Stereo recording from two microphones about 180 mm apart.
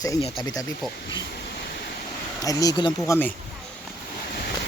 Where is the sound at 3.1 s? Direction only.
10° left (ahead or behind).